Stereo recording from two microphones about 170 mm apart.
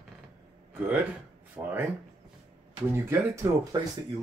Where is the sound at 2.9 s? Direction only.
15° right (ahead or behind).